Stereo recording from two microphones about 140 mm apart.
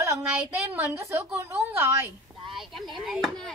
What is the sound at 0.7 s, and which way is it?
A woman's voice, 15° right (ahead or behind).